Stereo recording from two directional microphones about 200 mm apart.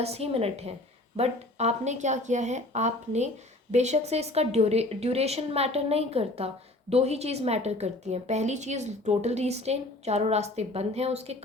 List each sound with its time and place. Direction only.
0.0 s a woman's voice: 30° right (ahead or behind)